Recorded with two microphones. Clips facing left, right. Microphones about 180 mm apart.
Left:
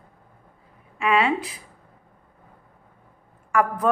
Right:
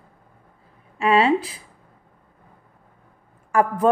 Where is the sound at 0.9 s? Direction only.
30° right (ahead or behind).